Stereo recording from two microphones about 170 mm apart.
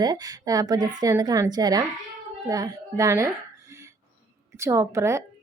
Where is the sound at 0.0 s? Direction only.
25° right (ahead or behind).